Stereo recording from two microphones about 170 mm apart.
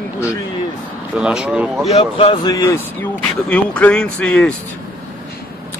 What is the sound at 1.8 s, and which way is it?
Speech, 35° left (ahead or behind).